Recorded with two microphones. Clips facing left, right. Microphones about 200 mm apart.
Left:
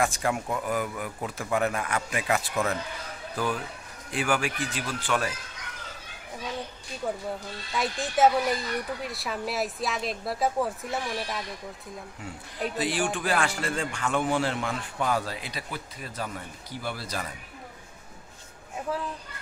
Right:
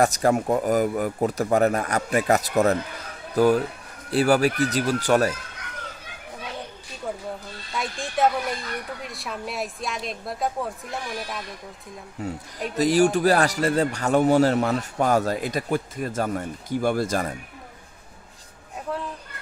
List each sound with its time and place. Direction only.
0.0 s a man's voice: 40° right (ahead or behind)
7.7 s a woman's voice: centre (ahead or behind)
12.2 s a man's voice: 40° right (ahead or behind)
18.9 s a woman's voice: centre (ahead or behind)